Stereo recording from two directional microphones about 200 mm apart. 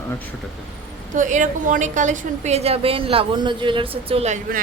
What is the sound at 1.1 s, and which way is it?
A woman's voice, 40° right (ahead or behind).